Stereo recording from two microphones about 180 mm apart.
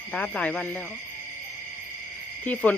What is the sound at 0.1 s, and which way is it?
Speech, 10° left (ahead or behind).